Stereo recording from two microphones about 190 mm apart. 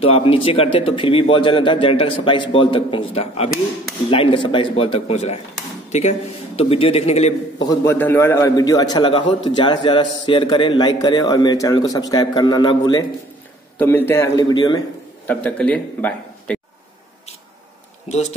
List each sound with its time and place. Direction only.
0.0 s a man's voice: 30° left (ahead or behind)
7.6 s speech: 15° left (ahead or behind)
13.7 s a man's voice: 10° left (ahead or behind)
15.2 s a man's voice: 5° left (ahead or behind)
18.0 s speech: 35° left (ahead or behind)